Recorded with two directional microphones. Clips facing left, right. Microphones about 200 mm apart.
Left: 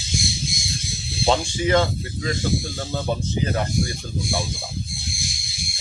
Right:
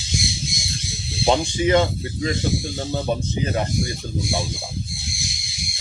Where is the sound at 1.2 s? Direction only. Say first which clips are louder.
Right 2 dB; 20° right (ahead or behind).